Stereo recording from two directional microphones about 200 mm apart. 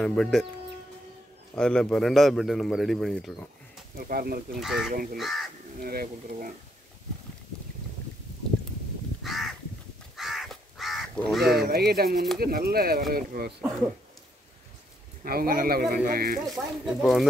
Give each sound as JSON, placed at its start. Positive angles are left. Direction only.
{"t": 0.0, "sound": "a man's voice", "side_deg": 0}
{"t": 1.5, "sound": "a man's voice", "side_deg": 5}
{"t": 3.9, "sound": "speech", "side_deg": -50}
{"t": 4.6, "sound": "a man's voice", "side_deg": 0}
{"t": 5.8, "sound": "speech", "side_deg": -45}
{"t": 9.2, "sound": "crow", "side_deg": 0}
{"t": 11.6, "sound": "speech", "side_deg": -50}
{"t": 15.2, "sound": "speech", "side_deg": -45}
{"t": 16.4, "sound": "a man's voice", "side_deg": 0}